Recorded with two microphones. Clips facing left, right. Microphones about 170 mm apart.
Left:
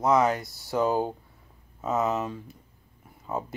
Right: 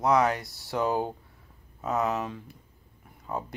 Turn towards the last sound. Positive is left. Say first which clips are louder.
# left 2 dB
turn(degrees=0)  # may be behind; listen again after turning